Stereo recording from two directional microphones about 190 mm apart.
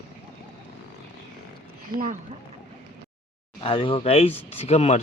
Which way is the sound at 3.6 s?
30° left (ahead or behind).